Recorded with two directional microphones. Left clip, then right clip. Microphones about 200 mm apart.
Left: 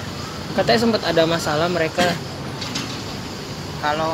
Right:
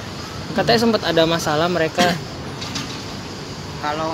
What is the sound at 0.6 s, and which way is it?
Speech, 25° right (ahead or behind).